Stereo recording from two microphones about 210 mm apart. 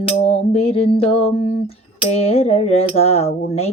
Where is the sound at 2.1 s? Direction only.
30° left (ahead or behind).